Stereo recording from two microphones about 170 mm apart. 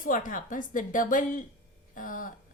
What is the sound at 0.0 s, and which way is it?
A woman's voice, 55° left (ahead or behind).